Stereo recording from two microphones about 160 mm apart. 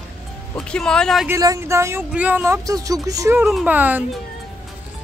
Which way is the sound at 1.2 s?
20° right (ahead or behind).